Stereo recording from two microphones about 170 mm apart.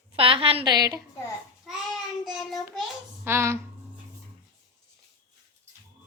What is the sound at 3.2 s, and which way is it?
Speech, 15° right (ahead or behind).